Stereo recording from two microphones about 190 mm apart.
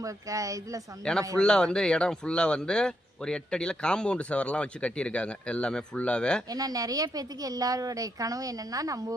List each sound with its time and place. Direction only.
0.0 s speech: 15° right (ahead or behind)
1.0 s speech: 5° left (ahead or behind)
6.5 s a woman's voice: 20° right (ahead or behind)